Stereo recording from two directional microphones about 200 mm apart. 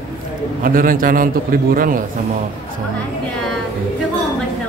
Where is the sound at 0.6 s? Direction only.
45° right (ahead or behind).